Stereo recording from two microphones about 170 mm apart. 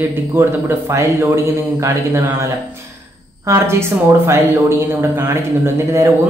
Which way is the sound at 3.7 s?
15° right (ahead or behind).